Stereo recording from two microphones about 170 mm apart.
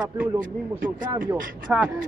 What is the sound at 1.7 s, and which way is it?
Speech, 5° right (ahead or behind).